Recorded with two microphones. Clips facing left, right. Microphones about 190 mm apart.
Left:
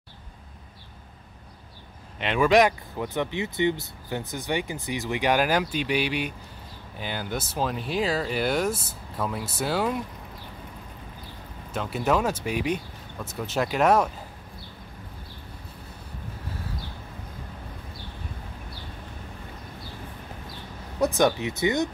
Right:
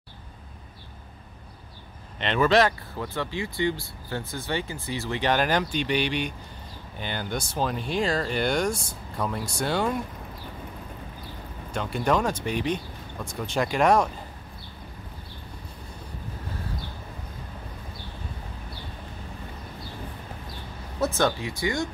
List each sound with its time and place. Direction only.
2.1 s speech: 10° left (ahead or behind)
11.7 s speech: 5° left (ahead or behind)
21.0 s speech: 15° left (ahead or behind)